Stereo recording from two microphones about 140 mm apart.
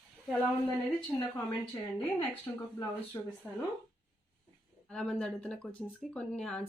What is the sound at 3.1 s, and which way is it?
Speech, 25° left (ahead or behind).